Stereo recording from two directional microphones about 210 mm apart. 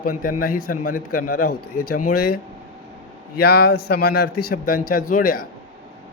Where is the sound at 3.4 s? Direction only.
50° left (ahead or behind).